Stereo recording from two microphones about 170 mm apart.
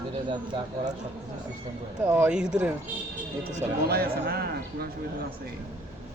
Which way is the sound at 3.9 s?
65° right (ahead or behind).